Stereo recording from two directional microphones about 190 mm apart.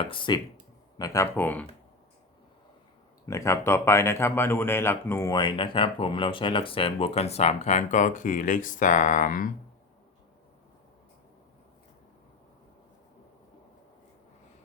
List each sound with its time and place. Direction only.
0.0 s speech: 25° left (ahead or behind); by 1.6 s 10° left (ahead or behind)
3.2 s speech: 15° left (ahead or behind); by 9.5 s 45° left (ahead or behind)